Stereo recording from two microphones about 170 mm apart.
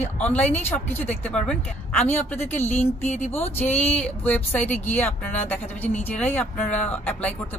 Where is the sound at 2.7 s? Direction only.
40° left (ahead or behind).